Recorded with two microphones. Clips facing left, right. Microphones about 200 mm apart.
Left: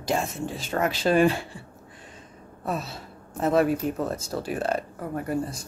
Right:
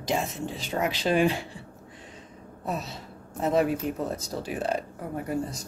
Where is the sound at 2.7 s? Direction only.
20° right (ahead or behind).